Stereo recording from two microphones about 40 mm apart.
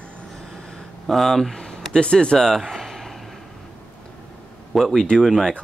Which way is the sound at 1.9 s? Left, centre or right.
Left.